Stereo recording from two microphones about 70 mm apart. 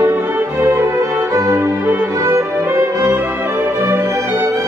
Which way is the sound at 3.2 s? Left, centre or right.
Right.